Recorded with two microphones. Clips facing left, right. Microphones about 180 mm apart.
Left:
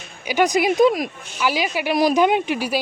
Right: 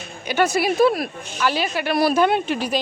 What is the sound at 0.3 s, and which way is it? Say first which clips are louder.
Speech: left 2 dB; 15° left (ahead or behind).